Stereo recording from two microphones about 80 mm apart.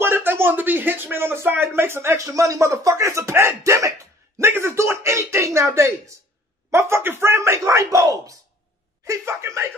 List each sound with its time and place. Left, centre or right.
0.0 s speech: right
4.4 s a sound: right
6.7 s speech: right